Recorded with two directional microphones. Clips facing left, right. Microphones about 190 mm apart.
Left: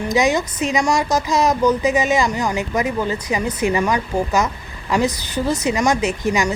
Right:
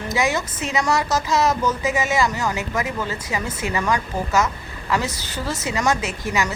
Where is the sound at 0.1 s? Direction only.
15° left (ahead or behind).